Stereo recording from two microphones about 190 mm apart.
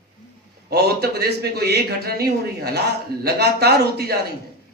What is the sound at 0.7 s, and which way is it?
A man's voice, 55° right (ahead or behind).